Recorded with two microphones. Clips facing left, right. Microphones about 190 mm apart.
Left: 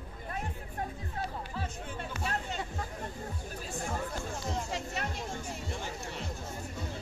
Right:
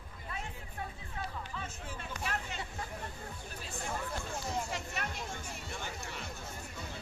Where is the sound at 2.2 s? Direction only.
35° left (ahead or behind).